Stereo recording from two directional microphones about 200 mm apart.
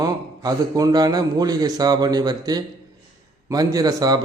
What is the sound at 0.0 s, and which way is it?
A man's voice, 20° right (ahead or behind).